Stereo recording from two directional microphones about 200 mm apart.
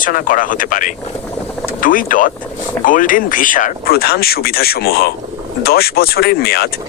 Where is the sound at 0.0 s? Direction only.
45° left (ahead or behind).